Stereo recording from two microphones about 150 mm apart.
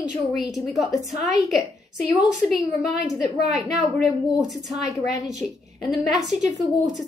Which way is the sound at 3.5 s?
Centre (ahead or behind).